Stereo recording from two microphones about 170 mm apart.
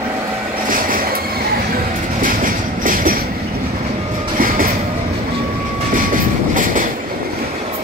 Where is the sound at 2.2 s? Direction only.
55° right (ahead or behind).